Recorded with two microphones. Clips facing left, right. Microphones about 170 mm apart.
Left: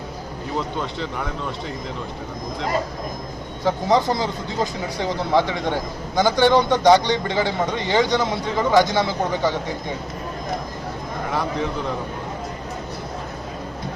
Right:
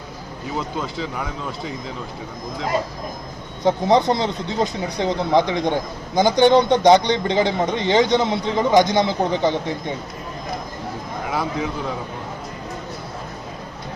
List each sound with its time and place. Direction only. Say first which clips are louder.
0.5 s speech: even; centre (ahead or behind)
3.6 s speech: right 2 dB; 20° right (ahead or behind)
11.3 s speech: even; 5° right (ahead or behind)